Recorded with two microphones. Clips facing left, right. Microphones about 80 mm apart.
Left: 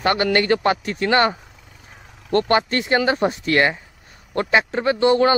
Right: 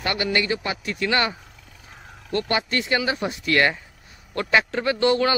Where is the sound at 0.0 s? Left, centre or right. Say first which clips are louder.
Left 6 dB; left.